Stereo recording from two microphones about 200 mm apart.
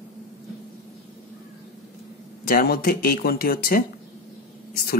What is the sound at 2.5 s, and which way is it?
Speech, 45° left (ahead or behind).